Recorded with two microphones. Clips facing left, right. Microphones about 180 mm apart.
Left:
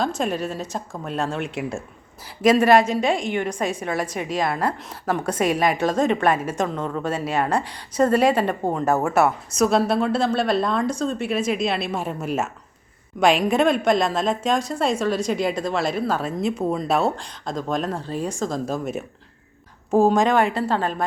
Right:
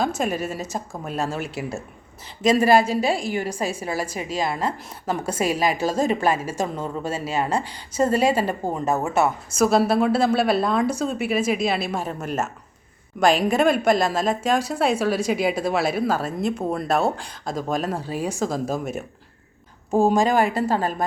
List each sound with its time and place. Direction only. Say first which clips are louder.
0.2 s a woman's voice: even; 5° right (ahead or behind)
2.4 s speech: left 2 dB; 30° right (ahead or behind)
3.7 s a woman's voice: left 1 dB; 5° right (ahead or behind)
20.2 s a woman's voice: left 1 dB; 5° right (ahead or behind)